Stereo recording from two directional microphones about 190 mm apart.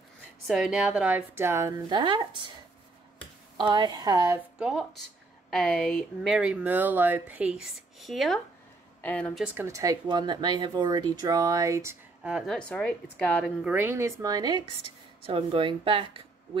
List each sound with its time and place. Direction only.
0.5 s speech: centre (ahead or behind); by 2.4 s 25° right (ahead or behind)
3.5 s speech: 25° right (ahead or behind)
4.6 s speech: 5° right (ahead or behind)
9.6 s speech: 15° right (ahead or behind); by 13.5 s 5° left (ahead or behind)
13.7 s speech: 10° right (ahead or behind); by 16.1 s 25° right (ahead or behind)